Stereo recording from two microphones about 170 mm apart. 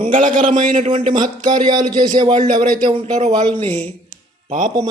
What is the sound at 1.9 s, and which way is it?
Speech, 25° right (ahead or behind).